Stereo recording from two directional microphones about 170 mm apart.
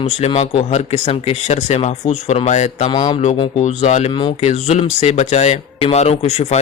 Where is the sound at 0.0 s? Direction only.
40° left (ahead or behind).